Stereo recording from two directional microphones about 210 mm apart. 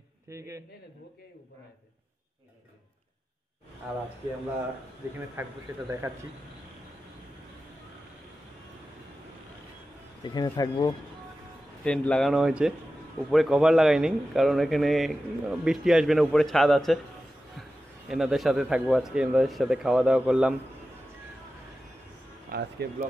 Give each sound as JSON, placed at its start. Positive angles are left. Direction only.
{"t": 0.3, "sound": "speech", "side_deg": -15}
{"t": 5.3, "sound": "speech", "side_deg": -10}
{"t": 10.2, "sound": "speech", "side_deg": 20}
{"t": 11.8, "sound": "speech", "side_deg": 5}
{"t": 22.5, "sound": "speech", "side_deg": -50}